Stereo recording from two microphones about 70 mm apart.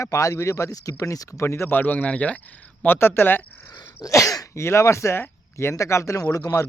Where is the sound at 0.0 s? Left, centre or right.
Left.